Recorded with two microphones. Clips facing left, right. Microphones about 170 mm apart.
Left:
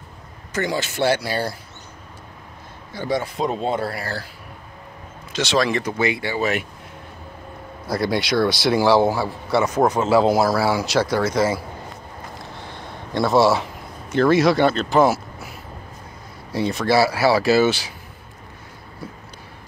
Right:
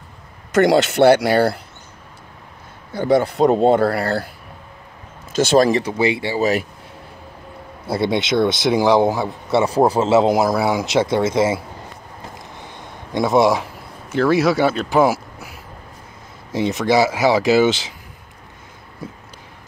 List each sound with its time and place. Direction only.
0.6 s speech: 65° right (ahead or behind)
3.0 s speech: 55° right (ahead or behind)
5.3 s speech: 50° right (ahead or behind)
5.8 s speech: 30° right (ahead or behind)
7.8 s a man's voice: 25° right (ahead or behind)
12.7 s a sound: 15° right (ahead or behind)
14.1 s speech: 5° right (ahead or behind)
16.5 s speech: 20° right (ahead or behind)